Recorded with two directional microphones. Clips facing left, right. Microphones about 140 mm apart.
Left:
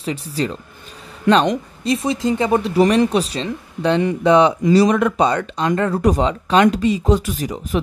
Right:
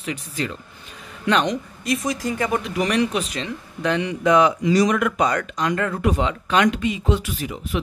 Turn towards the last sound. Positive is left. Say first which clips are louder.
# left 4 dB
turn(degrees=40)  # may be behind; listen again after turning